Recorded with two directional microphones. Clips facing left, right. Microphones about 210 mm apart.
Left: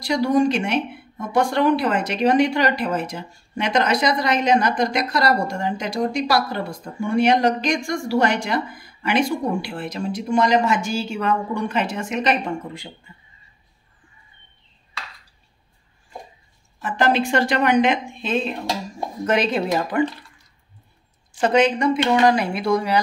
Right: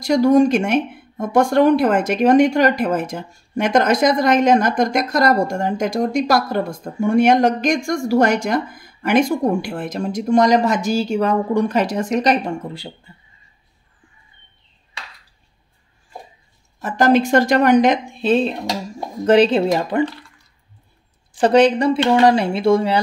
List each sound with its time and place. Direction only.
0.0 s speech: 45° right (ahead or behind)
16.8 s speech: 45° right (ahead or behind); by 20.1 s 25° right (ahead or behind)
21.4 s speech: 35° right (ahead or behind)